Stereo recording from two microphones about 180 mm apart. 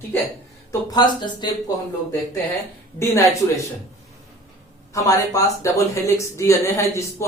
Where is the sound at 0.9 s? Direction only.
25° left (ahead or behind).